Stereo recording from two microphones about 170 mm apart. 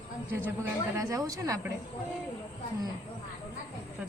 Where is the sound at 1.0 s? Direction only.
20° right (ahead or behind).